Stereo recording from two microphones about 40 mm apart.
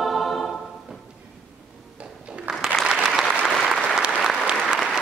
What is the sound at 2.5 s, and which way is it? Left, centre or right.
Applause, right.